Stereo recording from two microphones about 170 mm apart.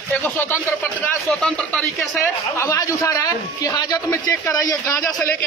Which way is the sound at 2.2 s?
15° left (ahead or behind).